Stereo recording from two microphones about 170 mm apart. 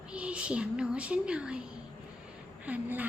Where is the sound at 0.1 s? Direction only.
5° right (ahead or behind).